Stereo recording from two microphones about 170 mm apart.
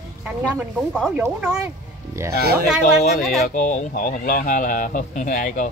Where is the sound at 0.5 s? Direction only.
10° right (ahead or behind).